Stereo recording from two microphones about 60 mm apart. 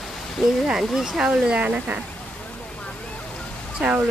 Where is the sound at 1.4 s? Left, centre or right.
Centre.